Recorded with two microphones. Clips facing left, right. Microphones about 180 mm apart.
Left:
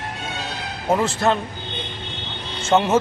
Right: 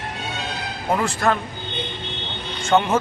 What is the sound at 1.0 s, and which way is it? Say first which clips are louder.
Speech: even; 25° left (ahead or behind).